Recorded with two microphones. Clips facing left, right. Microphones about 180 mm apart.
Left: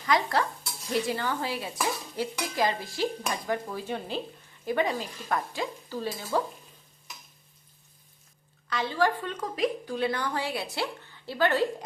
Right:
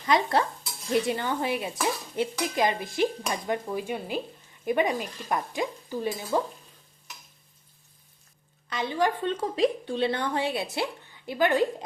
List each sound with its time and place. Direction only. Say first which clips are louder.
0.0 s a woman's voice: right 2 dB; 25° right (ahead or behind)
8.7 s a woman's voice: even; 20° right (ahead or behind)